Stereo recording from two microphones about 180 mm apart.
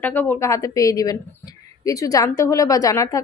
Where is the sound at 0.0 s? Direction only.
10° left (ahead or behind).